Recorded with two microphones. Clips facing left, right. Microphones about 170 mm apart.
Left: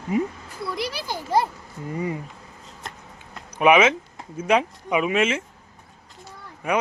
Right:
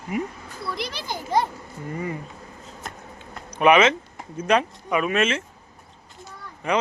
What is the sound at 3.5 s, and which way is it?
Speech, 10° left (ahead or behind).